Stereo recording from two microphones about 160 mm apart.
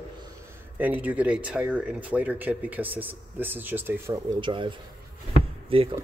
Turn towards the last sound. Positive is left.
turn(degrees=-35)  # may be behind; listen again after turning